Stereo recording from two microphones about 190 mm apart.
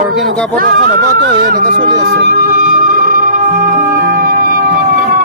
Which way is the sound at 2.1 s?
60° right (ahead or behind).